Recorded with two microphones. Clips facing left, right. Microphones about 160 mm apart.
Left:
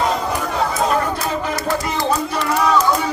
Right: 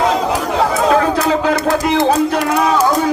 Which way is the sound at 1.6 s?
85° right.